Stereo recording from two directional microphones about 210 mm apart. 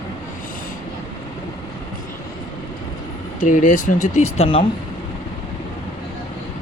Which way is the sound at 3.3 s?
40° left (ahead or behind).